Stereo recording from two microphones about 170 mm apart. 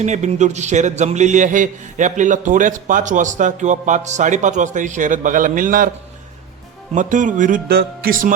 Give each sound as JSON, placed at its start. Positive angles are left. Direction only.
{"t": 0.0, "sound": "speech", "side_deg": -45}
{"t": 6.9, "sound": "speech", "side_deg": -50}